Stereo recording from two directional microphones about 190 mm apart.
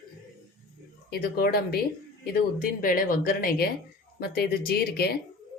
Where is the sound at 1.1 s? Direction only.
55° left (ahead or behind).